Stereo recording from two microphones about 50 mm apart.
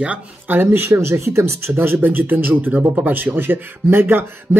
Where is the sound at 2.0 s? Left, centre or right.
Right.